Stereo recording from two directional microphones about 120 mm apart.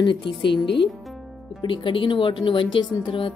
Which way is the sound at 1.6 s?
45° left (ahead or behind).